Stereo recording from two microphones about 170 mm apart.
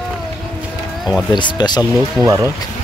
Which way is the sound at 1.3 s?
25° left (ahead or behind).